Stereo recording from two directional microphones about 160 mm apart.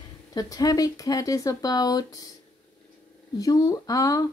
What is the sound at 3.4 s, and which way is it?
Speech, 20° left (ahead or behind).